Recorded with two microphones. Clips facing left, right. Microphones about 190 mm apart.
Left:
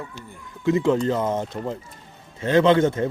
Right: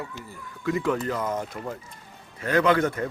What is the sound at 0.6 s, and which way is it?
A man's voice, 25° left (ahead or behind).